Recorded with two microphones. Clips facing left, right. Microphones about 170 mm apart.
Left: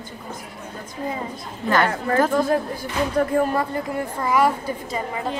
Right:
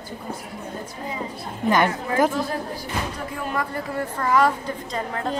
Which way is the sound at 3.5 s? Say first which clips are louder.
Left 4 dB; 30° left (ahead or behind).